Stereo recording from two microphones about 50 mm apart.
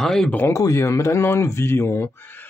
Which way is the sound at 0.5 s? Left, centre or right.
Left.